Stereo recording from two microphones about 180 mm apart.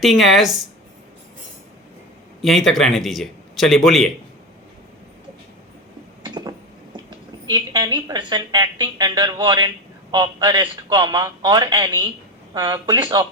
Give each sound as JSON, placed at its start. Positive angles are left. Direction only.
{"t": 0.0, "sound": "a man's voice", "side_deg": 0}
{"t": 2.4, "sound": "a man's voice", "side_deg": 0}
{"t": 6.2, "sound": "a sound", "side_deg": -25}
{"t": 7.4, "sound": "a woman's voice", "side_deg": -25}